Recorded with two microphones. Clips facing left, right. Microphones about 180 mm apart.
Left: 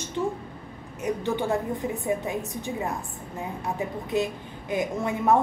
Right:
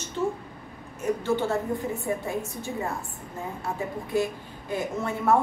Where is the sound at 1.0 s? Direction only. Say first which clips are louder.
Right 1 dB; 15° left (ahead or behind).